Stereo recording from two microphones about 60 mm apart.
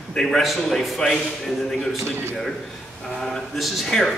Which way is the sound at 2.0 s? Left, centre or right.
Right.